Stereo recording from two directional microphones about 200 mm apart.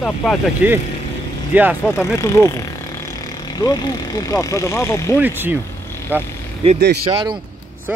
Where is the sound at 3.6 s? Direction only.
15° left (ahead or behind).